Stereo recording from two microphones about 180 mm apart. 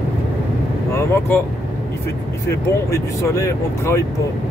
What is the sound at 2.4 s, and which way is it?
Speech, 15° left (ahead or behind).